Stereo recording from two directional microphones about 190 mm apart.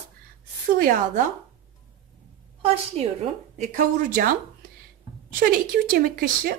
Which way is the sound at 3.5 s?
40° right (ahead or behind).